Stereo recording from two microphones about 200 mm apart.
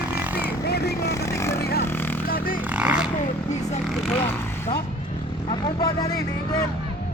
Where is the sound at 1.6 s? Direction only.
50° left (ahead or behind).